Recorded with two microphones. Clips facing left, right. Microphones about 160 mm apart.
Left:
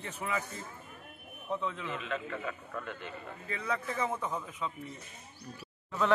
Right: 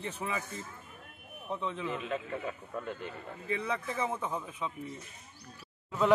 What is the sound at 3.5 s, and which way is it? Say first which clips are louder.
Speech: right 1 dB; 15° right (ahead or behind).